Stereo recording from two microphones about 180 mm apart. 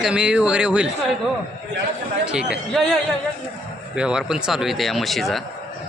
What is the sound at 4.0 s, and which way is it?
Speech, 5° right (ahead or behind).